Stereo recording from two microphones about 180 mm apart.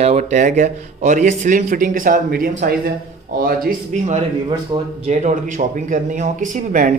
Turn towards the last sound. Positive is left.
turn(degrees=-45)  # may be behind; listen again after turning